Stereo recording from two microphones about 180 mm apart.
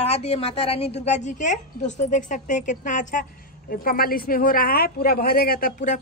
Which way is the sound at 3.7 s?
55° left (ahead or behind).